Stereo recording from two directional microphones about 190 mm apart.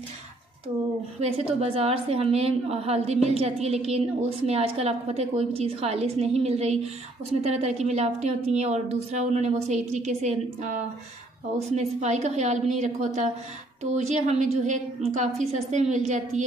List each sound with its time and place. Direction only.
1.2 s a woman's voice: 30° right (ahead or behind)